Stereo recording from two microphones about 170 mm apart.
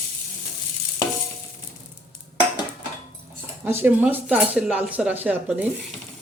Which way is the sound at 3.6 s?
10° right (ahead or behind).